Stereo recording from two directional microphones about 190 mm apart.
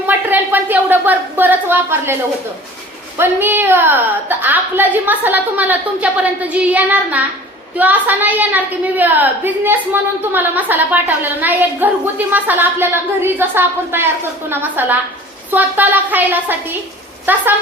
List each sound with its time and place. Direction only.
0.1 s speech: 10° right (ahead or behind)
3.2 s a woman's voice: 10° right (ahead or behind)